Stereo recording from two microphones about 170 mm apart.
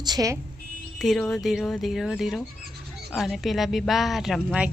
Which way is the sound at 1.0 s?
Centre (ahead or behind).